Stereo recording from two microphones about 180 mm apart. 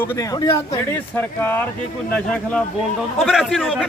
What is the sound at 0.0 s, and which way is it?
A man's voice, 15° left (ahead or behind).